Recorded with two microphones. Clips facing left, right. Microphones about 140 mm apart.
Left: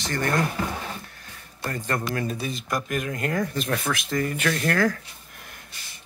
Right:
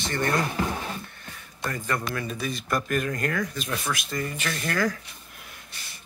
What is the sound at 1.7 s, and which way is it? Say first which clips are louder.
Speech: left 2 dB; 40° left (ahead or behind).